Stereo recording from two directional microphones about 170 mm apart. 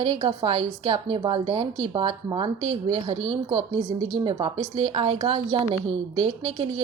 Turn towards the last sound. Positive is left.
turn(degrees=-35)  # may be behind; listen again after turning